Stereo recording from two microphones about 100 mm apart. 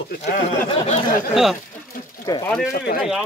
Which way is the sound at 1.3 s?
5° right (ahead or behind).